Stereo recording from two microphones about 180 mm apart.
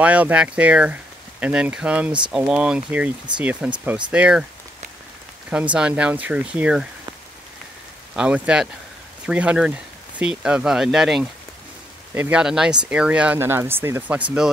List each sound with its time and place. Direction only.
0.0 s speech: 10° right (ahead or behind)
5.5 s speech: 5° right (ahead or behind)
8.1 s speech: 5° right (ahead or behind)